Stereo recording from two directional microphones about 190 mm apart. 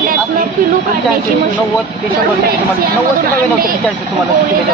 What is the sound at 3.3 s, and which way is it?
Speech, 50° right (ahead or behind).